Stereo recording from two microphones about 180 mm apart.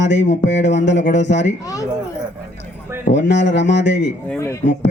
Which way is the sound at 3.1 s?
75° left (ahead or behind).